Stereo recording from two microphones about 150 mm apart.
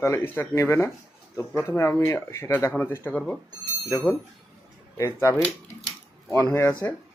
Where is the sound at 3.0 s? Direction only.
5° left (ahead or behind).